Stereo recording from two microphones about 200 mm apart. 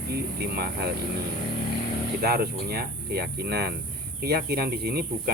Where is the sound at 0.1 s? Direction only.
50° right (ahead or behind).